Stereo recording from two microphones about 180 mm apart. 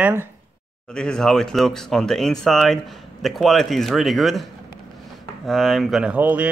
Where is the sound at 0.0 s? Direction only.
15° right (ahead or behind).